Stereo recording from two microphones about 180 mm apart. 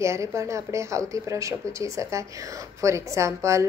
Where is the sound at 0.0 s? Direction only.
15° right (ahead or behind).